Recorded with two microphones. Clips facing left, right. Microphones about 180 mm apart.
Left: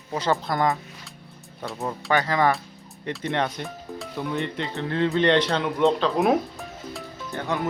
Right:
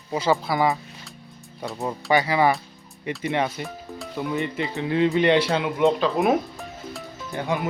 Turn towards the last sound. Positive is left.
turn(degrees=-10)  # may be behind; listen again after turning